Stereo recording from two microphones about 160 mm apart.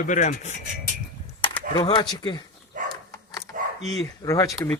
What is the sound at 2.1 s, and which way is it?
Speech, 25° left (ahead or behind).